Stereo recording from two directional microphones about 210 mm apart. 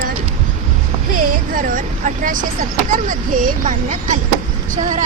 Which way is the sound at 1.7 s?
40° right (ahead or behind).